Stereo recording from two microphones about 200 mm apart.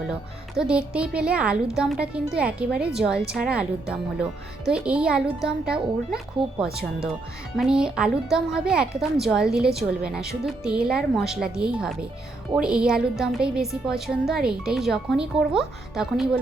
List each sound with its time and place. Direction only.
0.1 s speech: 5° right (ahead or behind)
6.4 s speech: 25° right (ahead or behind)
7.5 s speech: 5° right (ahead or behind)